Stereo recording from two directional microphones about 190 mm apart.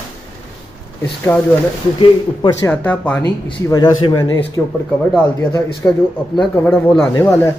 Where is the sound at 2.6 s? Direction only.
10° left (ahead or behind).